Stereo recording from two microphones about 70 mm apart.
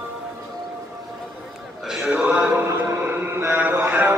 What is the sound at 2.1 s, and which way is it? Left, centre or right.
Mantra, right.